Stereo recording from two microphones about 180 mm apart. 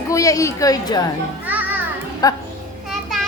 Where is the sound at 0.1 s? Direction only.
20° left (ahead or behind).